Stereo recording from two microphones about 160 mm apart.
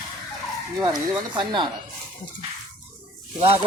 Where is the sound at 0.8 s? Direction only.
20° right (ahead or behind).